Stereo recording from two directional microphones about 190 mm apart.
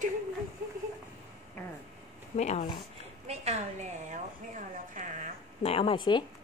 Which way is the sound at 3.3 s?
35° right (ahead or behind).